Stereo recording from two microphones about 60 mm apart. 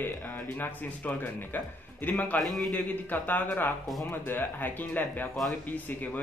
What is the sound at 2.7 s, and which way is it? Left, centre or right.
A man's voice, left.